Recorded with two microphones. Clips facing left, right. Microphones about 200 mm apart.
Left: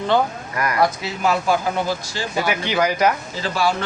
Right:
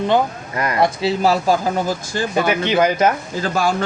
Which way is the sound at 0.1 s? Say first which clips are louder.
Right 2 dB; 25° right (ahead or behind).